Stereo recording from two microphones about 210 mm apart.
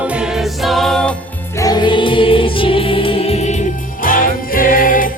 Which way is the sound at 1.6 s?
20° left (ahead or behind).